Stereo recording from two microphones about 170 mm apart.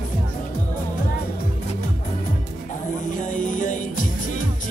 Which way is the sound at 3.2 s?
50° left (ahead or behind).